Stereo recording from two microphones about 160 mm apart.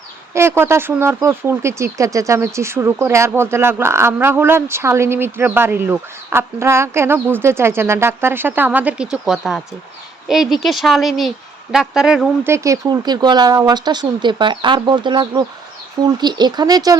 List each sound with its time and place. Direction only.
0.3 s speech: 15° right (ahead or behind)
12.5 s speech: 20° right (ahead or behind)